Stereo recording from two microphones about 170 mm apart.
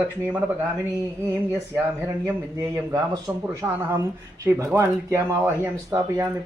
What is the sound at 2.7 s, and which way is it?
Speech, 20° right (ahead or behind).